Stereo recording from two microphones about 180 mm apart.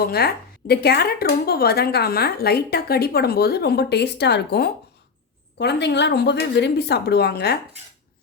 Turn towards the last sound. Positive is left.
turn(degrees=65)  # may be behind; listen again after turning